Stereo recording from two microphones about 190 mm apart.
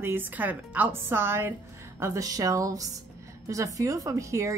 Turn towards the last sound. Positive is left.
turn(degrees=-15)  # may be behind; listen again after turning